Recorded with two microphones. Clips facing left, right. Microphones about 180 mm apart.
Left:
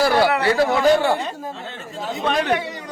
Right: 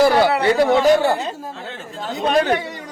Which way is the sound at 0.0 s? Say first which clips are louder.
Right 3 dB; 20° right (ahead or behind).